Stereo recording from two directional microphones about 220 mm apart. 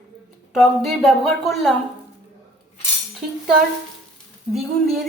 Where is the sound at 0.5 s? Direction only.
Centre (ahead or behind).